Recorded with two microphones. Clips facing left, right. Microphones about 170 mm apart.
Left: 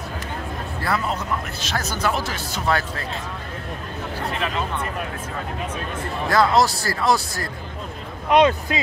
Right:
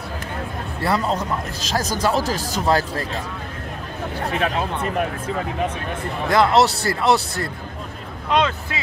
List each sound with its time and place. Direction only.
0.8 s speech: 35° right (ahead or behind)
6.2 s speech: 20° right (ahead or behind)
8.3 s speech: 20° left (ahead or behind)